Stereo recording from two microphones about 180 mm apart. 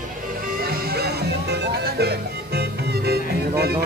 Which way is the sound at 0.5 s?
55° right (ahead or behind).